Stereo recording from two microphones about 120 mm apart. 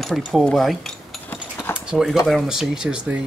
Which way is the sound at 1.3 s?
15° left (ahead or behind).